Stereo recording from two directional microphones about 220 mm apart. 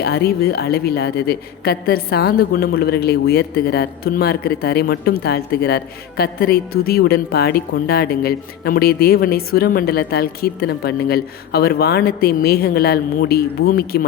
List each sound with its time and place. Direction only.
0.0 s a woman's voice: 45° left (ahead or behind)